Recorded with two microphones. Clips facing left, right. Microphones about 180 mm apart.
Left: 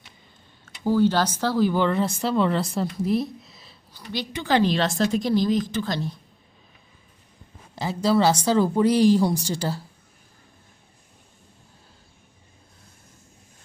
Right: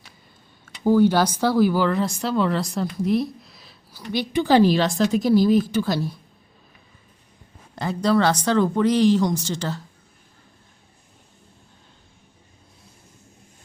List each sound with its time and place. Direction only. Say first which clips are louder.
0.6 s speech: right 3 dB; 15° right (ahead or behind)
4.1 s a woman's voice: right 5 dB; 10° right (ahead or behind)
7.8 s speech: right 1 dB; 5° left (ahead or behind)